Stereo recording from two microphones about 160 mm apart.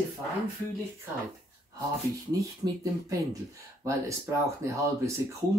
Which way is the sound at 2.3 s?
20° right (ahead or behind).